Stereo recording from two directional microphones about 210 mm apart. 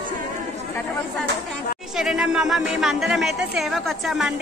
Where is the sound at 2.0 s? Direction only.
5° right (ahead or behind).